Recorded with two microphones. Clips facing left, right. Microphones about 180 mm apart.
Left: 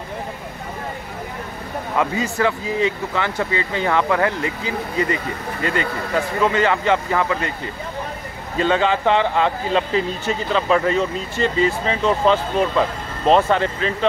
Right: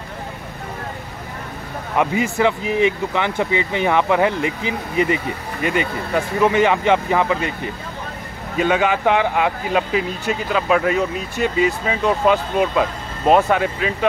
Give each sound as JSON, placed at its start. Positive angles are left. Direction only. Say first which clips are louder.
{"t": 2.0, "sound": "speech", "louder": "right 2 dB", "side_deg": -20}